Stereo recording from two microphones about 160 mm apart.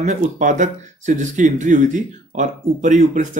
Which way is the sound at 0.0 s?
50° right (ahead or behind).